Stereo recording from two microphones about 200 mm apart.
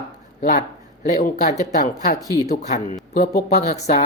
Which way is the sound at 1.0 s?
40° left (ahead or behind).